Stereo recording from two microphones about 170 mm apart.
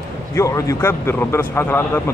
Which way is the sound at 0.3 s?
15° left (ahead or behind).